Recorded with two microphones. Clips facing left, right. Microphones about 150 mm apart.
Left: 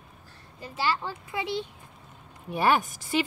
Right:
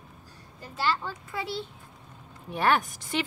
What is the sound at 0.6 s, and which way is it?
Speech, 10° left (ahead or behind).